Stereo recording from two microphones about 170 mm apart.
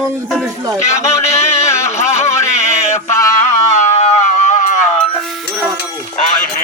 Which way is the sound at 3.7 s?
45° left (ahead or behind).